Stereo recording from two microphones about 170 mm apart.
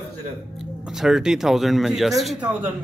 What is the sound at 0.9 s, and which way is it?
Speech, 5° right (ahead or behind).